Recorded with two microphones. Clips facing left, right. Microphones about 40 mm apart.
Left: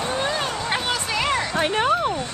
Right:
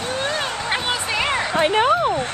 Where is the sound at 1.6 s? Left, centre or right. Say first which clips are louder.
Right 5 dB; centre.